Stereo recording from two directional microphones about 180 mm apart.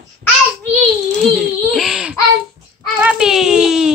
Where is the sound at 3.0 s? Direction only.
5° right (ahead or behind).